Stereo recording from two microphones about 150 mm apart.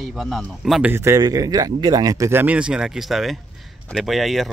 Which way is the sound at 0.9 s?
20° right (ahead or behind).